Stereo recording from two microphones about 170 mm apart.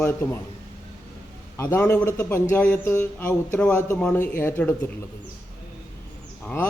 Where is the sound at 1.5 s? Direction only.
15° left (ahead or behind).